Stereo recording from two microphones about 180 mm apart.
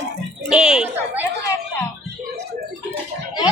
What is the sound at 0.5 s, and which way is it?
Speech, 5° right (ahead or behind).